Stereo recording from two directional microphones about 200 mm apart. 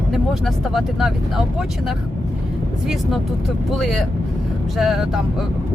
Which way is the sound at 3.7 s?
Centre (ahead or behind).